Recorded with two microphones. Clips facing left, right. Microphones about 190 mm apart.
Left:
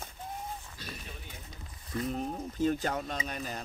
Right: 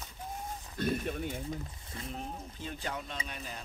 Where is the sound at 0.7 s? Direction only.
55° right (ahead or behind).